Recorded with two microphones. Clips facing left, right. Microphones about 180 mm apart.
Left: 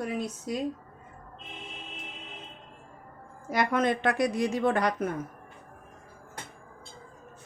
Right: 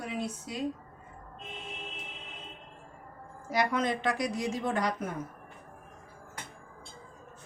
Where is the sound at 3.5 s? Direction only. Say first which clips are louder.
Left 3 dB; 55° left (ahead or behind).